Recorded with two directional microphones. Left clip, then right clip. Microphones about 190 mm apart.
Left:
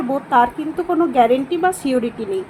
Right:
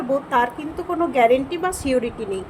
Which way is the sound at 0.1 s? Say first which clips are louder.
Left 4 dB; 25° left (ahead or behind).